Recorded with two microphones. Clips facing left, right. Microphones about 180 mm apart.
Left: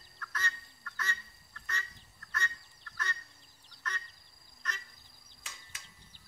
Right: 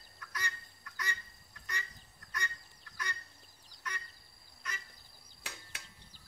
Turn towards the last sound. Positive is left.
turn(degrees=-65)  # may be behind; listen again after turning